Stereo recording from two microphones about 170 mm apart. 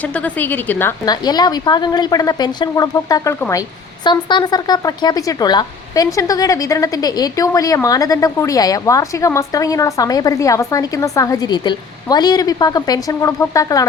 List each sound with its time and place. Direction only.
0.1 s a woman's voice: 10° left (ahead or behind)
1.1 s speech: 25° left (ahead or behind)